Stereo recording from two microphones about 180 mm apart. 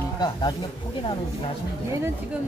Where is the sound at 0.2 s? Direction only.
20° left (ahead or behind).